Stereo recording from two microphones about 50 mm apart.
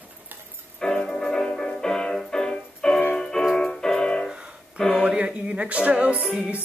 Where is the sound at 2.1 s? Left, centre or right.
Centre.